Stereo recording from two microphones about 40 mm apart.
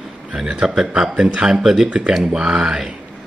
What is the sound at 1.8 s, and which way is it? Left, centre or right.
Speech, right.